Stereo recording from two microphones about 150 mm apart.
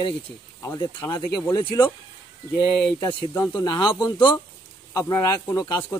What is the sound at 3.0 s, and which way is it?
Speech, 25° left (ahead or behind).